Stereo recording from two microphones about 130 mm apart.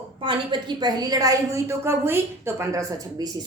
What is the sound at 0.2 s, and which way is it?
A woman's voice, 40° right (ahead or behind).